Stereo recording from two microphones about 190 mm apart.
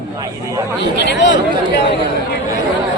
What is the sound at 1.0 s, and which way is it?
Speech, 70° left (ahead or behind).